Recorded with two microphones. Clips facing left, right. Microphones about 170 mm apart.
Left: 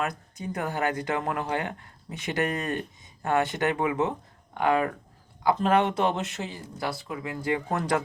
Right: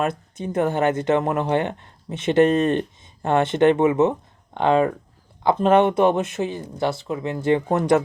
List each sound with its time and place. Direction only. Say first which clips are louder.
0.0 s speech: right 7 dB; 25° right (ahead or behind)